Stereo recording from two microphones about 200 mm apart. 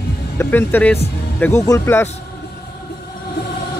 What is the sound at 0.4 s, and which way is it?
Speech, 10° left (ahead or behind).